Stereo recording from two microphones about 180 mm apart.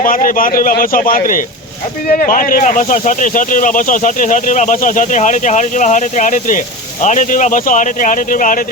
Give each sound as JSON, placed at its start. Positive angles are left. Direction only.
{"t": 0.0, "sound": "speech", "side_deg": 50}